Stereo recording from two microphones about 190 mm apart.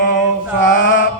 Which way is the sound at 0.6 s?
70° left (ahead or behind).